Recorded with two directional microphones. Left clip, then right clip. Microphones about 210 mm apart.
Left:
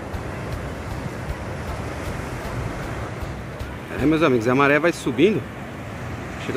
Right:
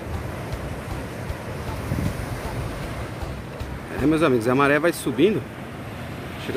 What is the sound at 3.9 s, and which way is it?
Speech, centre (ahead or behind).